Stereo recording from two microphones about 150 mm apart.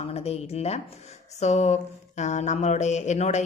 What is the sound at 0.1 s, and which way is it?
Speech, 45° left (ahead or behind).